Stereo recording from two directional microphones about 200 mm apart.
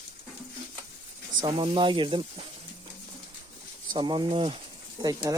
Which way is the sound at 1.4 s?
25° right (ahead or behind).